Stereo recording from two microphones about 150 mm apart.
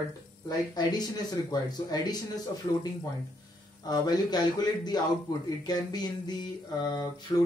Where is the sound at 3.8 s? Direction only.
25° left (ahead or behind).